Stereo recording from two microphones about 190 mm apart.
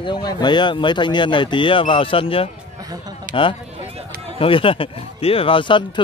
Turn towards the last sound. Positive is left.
turn(degrees=25)  # may be behind; listen again after turning